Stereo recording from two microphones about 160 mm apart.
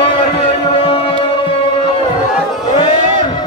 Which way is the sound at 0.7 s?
35° left (ahead or behind).